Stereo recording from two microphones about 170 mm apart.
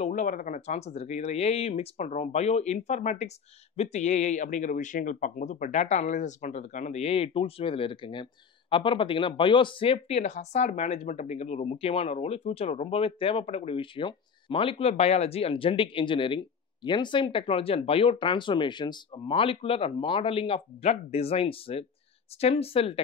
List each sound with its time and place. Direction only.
0.0 s speech: 50° left (ahead or behind)